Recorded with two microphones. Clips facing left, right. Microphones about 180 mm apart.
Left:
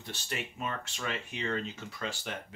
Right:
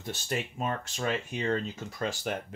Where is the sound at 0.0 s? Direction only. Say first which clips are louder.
Right 6 dB; 45° right (ahead or behind).